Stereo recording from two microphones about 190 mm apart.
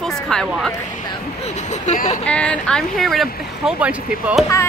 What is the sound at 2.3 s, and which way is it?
Speech, 5° left (ahead or behind).